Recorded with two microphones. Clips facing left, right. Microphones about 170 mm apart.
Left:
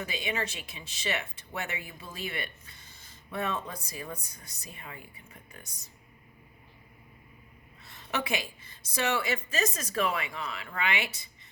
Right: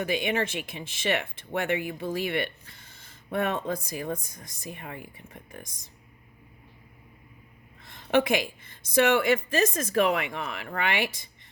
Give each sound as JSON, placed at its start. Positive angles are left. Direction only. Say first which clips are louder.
{"t": 0.1, "sound": "a woman's voice", "louder": "right 7 dB", "side_deg": -55}
{"t": 8.1, "sound": "a woman's voice", "louder": "right 9 dB", "side_deg": -60}